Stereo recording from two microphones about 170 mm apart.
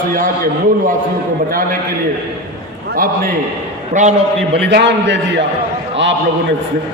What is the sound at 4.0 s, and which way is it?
Speech, 45° right (ahead or behind).